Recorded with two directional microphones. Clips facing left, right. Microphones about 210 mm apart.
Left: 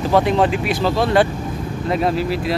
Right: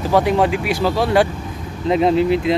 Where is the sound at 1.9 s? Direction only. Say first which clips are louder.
Right 5 dB; 20° right (ahead or behind).